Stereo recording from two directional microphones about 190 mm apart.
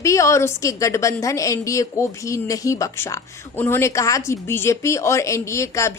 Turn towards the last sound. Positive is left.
turn(degrees=15)  # may be behind; listen again after turning